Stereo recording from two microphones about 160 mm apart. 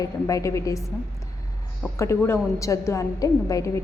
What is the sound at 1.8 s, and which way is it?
A woman's voice, 15° left (ahead or behind).